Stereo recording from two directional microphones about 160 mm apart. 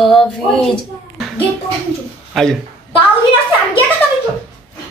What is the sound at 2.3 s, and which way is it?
Speech, centre (ahead or behind).